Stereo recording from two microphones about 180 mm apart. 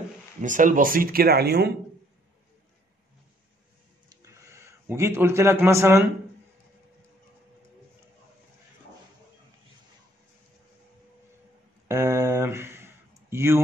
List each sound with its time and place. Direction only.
0.4 s speech: 45° right (ahead or behind); by 1.7 s 60° right (ahead or behind)
4.2 s a man's voice: 15° right (ahead or behind)
11.9 s a sound: 15° right (ahead or behind)